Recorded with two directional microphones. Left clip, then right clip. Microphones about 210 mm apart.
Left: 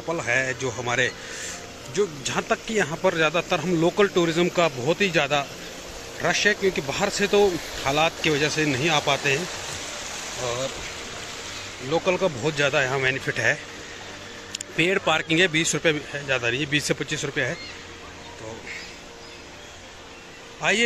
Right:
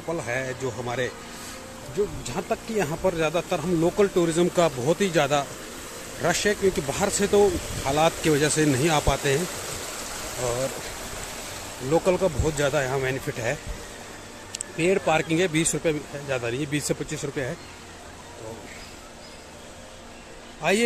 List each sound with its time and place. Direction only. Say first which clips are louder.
0.1 s speech: left 5 dB; 5° right (ahead or behind)
2.3 s speech: left 3 dB; centre (ahead or behind); by 9.4 s 20° right (ahead or behind)
11.9 s speech: right 1 dB; 20° right (ahead or behind)
20.6 s speech: left 1 dB; centre (ahead or behind)